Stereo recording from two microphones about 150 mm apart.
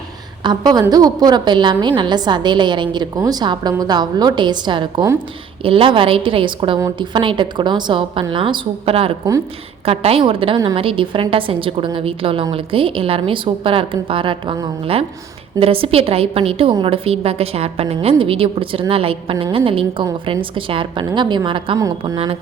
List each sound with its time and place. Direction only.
0.7 s a woman's voice: 25° right (ahead or behind)